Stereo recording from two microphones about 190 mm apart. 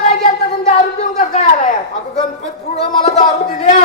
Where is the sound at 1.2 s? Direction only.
40° left (ahead or behind).